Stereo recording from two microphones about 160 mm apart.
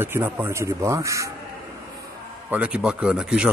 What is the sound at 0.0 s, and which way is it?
Speech, 15° right (ahead or behind).